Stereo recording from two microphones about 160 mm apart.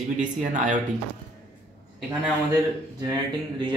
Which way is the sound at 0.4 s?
55° right (ahead or behind).